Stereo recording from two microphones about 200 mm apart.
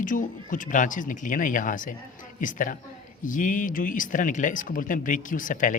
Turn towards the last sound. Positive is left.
turn(degrees=40)  # may be behind; listen again after turning